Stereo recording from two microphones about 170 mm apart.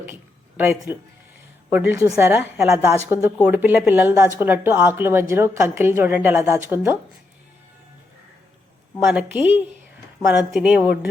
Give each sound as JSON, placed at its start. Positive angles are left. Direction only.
{"t": 0.0, "sound": "a sound", "side_deg": -10}
{"t": 1.7, "sound": "a woman's voice", "side_deg": -10}
{"t": 9.0, "sound": "a woman's voice", "side_deg": -5}